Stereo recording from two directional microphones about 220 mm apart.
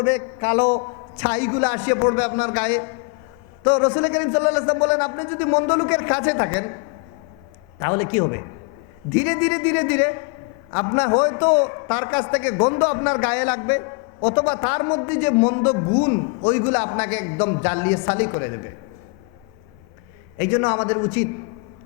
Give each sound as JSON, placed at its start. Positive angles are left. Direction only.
{"t": 0.0, "sound": "a man's voice", "side_deg": 15}
{"t": 4.9, "sound": "a man's voice", "side_deg": 15}
{"t": 7.8, "sound": "a man's voice", "side_deg": 15}
{"t": 9.2, "sound": "a man's voice", "side_deg": 10}
{"t": 10.7, "sound": "a man's voice", "side_deg": 25}
{"t": 11.9, "sound": "a man's voice", "side_deg": 10}
{"t": 12.5, "sound": "a man's voice", "side_deg": 25}
{"t": 14.2, "sound": "a man's voice", "side_deg": 30}
{"t": 15.4, "sound": "a man's voice", "side_deg": 25}
{"t": 17.3, "sound": "a man's voice", "side_deg": 25}
{"t": 17.6, "sound": "a man's voice", "side_deg": 15}
{"t": 20.4, "sound": "a man's voice", "side_deg": 20}